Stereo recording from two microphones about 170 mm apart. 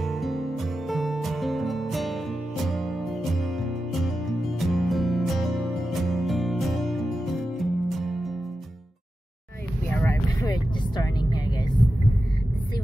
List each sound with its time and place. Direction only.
0.0 s music: centre (ahead or behind)
9.9 s vehicle: 15° left (ahead or behind)